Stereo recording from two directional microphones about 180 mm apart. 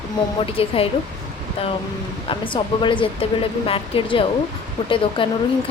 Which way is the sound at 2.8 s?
30° left (ahead or behind).